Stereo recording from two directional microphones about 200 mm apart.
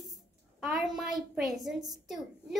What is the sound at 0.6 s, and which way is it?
A woman's voice, centre (ahead or behind).